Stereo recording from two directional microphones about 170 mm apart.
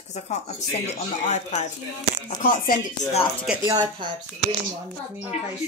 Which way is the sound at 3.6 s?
25° right (ahead or behind).